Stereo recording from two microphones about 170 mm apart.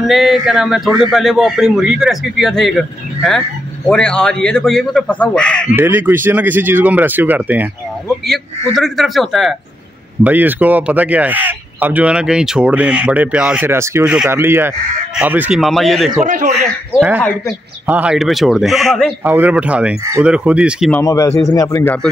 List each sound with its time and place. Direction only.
0.0 s a man's voice: centre (ahead or behind)
5.8 s speech: 10° right (ahead or behind)
8.7 s a man's voice: centre (ahead or behind)
16.3 s speech: 50° right (ahead or behind)
17.8 s a man's voice: 10° right (ahead or behind)
19.2 s speech: 10° right (ahead or behind)
20.9 s a man's voice: 20° left (ahead or behind)